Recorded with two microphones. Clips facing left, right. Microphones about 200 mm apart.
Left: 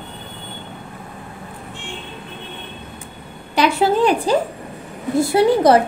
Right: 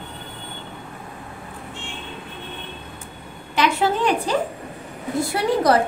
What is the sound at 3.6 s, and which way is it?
Speech, 35° left (ahead or behind).